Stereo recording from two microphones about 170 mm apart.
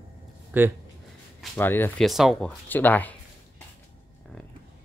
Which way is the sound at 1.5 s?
10° left (ahead or behind).